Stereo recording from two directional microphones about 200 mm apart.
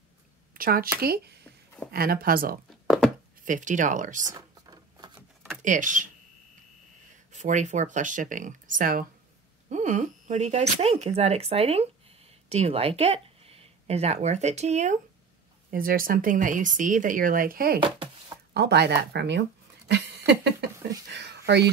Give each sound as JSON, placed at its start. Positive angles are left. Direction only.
{"t": 0.6, "sound": "speech", "side_deg": -45}
{"t": 2.7, "sound": "chopping", "side_deg": 0}
{"t": 3.4, "sound": "speech", "side_deg": -40}
{"t": 4.3, "sound": "a sound", "side_deg": -20}
{"t": 5.6, "sound": "speech", "side_deg": -40}
{"t": 7.3, "sound": "speech", "side_deg": -35}
{"t": 15.7, "sound": "speech", "side_deg": -45}
{"t": 17.7, "sound": "speech", "side_deg": -25}
{"t": 18.5, "sound": "speech", "side_deg": -55}
{"t": 19.9, "sound": "a sound", "side_deg": -60}